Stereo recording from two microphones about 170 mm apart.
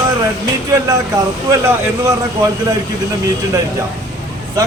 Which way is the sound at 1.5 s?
20° right (ahead or behind).